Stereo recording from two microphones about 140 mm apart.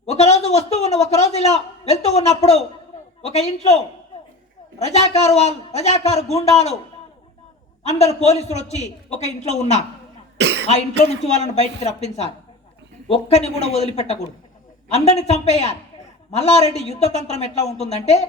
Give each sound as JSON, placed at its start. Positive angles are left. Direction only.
{"t": 0.0, "sound": "a man's voice", "side_deg": 50}
{"t": 7.9, "sound": "a man's voice", "side_deg": 50}